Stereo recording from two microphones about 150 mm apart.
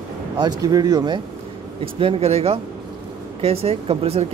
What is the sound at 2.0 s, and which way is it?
Speech, 40° right (ahead or behind).